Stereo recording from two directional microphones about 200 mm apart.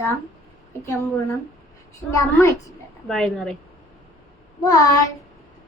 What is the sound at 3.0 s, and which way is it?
Speech, centre (ahead or behind).